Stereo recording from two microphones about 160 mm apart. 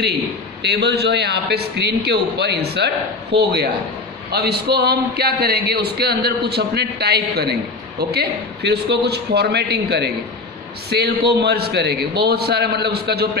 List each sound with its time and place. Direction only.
0.6 s a man's voice: 90° right